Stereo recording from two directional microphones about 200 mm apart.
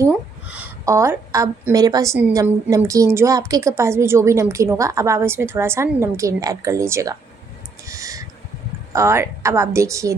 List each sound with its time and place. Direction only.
0.0 s a woman's voice: 5° right (ahead or behind)
7.9 s owl: 15° right (ahead or behind)
8.9 s a woman's voice: 15° right (ahead or behind)